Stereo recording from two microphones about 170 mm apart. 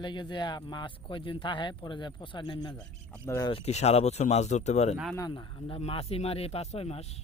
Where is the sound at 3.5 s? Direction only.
40° left (ahead or behind).